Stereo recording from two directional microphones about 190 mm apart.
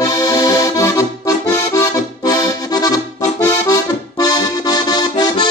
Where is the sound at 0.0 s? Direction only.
20° left (ahead or behind).